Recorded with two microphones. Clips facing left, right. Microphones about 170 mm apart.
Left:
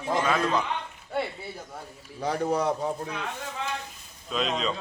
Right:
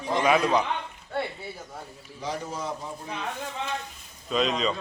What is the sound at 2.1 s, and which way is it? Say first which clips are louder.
Speech: left 7 dB; 60° left (ahead or behind).